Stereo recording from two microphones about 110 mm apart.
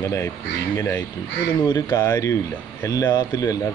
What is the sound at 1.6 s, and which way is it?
Speech, 35° left (ahead or behind).